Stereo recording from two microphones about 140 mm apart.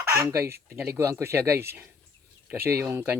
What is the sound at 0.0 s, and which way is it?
Speech, 15° right (ahead or behind).